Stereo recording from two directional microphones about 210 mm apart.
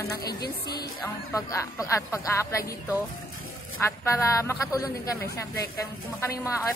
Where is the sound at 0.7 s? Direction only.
15° left (ahead or behind).